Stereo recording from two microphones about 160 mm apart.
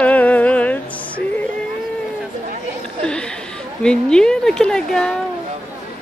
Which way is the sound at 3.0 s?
5° left (ahead or behind).